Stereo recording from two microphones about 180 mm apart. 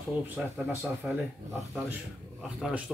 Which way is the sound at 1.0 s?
5° right (ahead or behind).